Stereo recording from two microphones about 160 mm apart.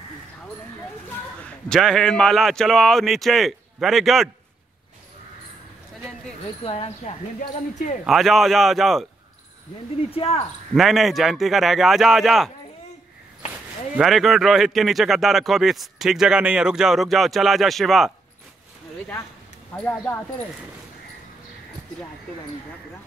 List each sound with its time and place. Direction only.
1.4 s a man's voice: 5° left (ahead or behind)
6.6 s speech: 40° left (ahead or behind)
7.3 s speech: 55° left (ahead or behind)
8.0 s a man's voice: centre (ahead or behind)
10.1 s speech: 35° left (ahead or behind)
10.7 s a man's voice: centre (ahead or behind)
13.5 s a man's voice: 5° right (ahead or behind)
19.7 s speech: 10° left (ahead or behind)